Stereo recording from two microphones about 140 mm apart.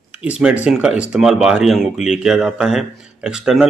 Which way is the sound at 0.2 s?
5° right (ahead or behind).